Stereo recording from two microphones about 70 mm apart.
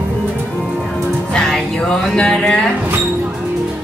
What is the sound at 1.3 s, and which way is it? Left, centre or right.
Music, centre.